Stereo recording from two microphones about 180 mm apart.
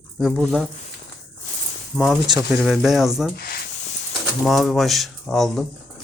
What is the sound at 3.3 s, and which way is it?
Snake, 55° left (ahead or behind).